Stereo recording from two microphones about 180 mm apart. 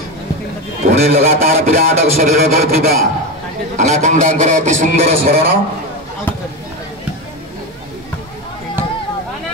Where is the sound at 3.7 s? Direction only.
40° right (ahead or behind).